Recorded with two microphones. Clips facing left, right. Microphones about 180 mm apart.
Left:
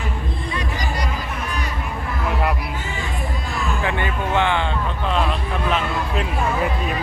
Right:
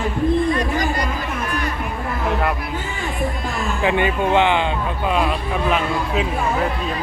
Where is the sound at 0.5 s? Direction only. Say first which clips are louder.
Right 6 dB; 50° right (ahead or behind).